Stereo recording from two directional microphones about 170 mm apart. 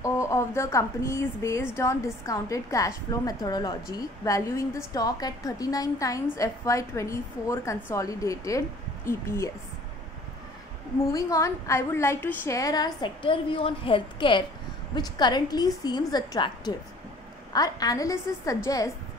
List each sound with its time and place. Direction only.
0.0 s a woman's voice: 15° left (ahead or behind)
11.1 s a woman's voice: 20° left (ahead or behind)